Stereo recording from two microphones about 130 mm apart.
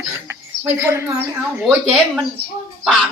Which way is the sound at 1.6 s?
5° right (ahead or behind).